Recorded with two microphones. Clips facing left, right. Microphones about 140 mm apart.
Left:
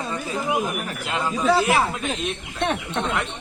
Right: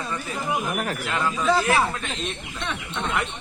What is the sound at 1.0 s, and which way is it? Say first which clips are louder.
Speech: left 3 dB; 20° left (ahead or behind).